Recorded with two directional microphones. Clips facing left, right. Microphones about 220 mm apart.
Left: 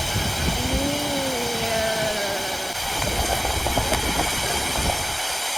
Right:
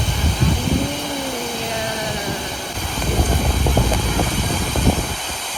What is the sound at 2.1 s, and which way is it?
Vehicle, 10° left (ahead or behind).